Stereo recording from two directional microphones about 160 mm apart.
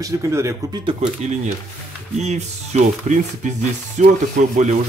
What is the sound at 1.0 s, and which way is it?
Speech, 40° right (ahead or behind).